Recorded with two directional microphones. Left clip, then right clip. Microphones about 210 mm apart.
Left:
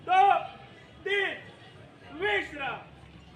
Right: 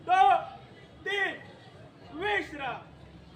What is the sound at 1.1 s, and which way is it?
Music, 50° left (ahead or behind).